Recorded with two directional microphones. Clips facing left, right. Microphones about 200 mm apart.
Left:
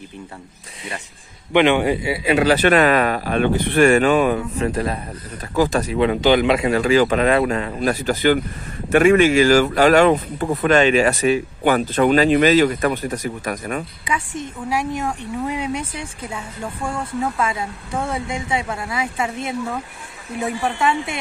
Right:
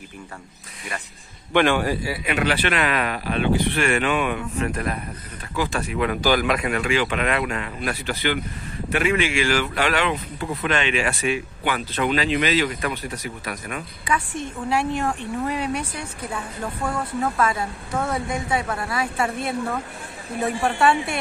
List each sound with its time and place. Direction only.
1.5 s a man's voice: 20° left (ahead or behind)
2.3 s speech: 40° left (ahead or behind)
14.1 s a woman's voice: 15° left (ahead or behind)
18.0 s a man's voice: 25° left (ahead or behind)
20.6 s a woman's voice: 20° left (ahead or behind)